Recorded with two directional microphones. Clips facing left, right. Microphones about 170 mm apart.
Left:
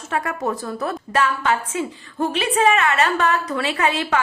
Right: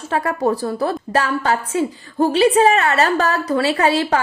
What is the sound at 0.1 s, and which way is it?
A woman's voice, 35° right (ahead or behind).